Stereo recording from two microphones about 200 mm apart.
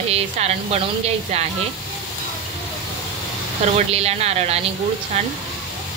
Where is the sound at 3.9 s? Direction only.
30° right (ahead or behind).